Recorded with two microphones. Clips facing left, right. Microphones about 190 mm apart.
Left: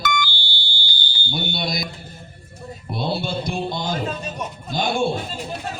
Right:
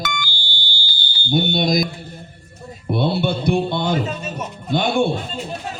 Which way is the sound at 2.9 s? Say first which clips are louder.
Right 5 dB; 60° right (ahead or behind).